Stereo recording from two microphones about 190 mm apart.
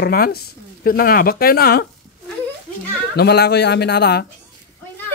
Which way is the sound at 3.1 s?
60° left (ahead or behind).